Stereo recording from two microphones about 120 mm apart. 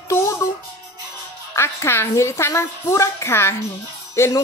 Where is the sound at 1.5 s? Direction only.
25° left (ahead or behind).